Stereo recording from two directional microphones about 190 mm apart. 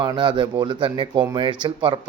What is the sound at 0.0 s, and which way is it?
Speech, 25° right (ahead or behind).